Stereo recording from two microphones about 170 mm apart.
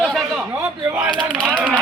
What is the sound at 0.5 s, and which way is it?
Speech, 10° right (ahead or behind).